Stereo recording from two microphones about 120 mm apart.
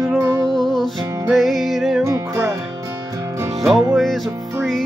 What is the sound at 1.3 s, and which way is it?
Music, centre (ahead or behind).